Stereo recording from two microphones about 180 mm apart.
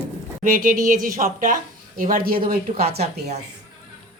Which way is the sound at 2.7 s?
40° right (ahead or behind).